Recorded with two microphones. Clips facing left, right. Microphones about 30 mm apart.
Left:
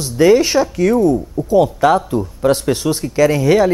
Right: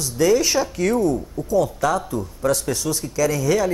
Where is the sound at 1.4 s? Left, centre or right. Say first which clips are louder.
Left 7 dB; left.